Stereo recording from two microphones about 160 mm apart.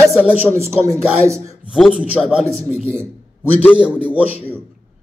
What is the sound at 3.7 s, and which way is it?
Speech, 5° right (ahead or behind).